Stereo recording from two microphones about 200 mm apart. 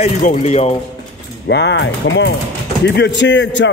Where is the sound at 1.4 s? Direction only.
60° left (ahead or behind).